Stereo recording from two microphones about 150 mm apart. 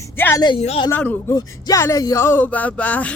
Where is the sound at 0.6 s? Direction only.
45° left (ahead or behind).